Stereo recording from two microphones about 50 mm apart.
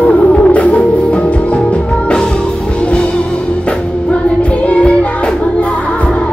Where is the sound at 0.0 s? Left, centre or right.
Left.